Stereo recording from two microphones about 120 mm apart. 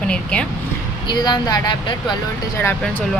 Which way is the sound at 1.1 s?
35° left (ahead or behind).